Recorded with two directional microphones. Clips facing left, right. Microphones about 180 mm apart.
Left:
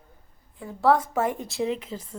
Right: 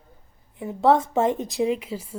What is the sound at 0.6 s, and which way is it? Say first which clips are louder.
A woman's voice: right 2 dB; 20° right (ahead or behind).